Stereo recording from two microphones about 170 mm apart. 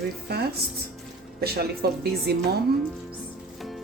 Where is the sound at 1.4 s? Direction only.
70° right (ahead or behind).